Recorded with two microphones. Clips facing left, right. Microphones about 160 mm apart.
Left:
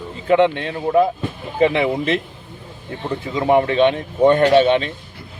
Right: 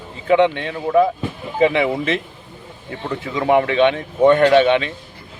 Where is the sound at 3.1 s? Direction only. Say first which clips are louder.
Even; 25° left (ahead or behind).